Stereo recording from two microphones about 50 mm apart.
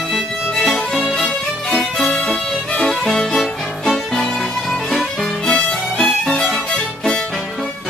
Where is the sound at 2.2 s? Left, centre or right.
Centre.